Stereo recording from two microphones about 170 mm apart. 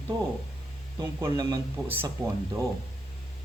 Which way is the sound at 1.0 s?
20° right (ahead or behind).